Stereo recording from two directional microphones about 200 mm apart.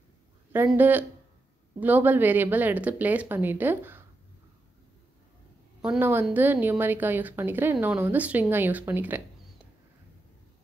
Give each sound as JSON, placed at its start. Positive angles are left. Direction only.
{"t": 0.5, "sound": "a woman's voice", "side_deg": -10}
{"t": 5.8, "sound": "a woman's voice", "side_deg": -5}